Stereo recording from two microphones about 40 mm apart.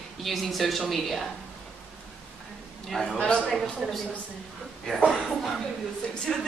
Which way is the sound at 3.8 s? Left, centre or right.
Centre.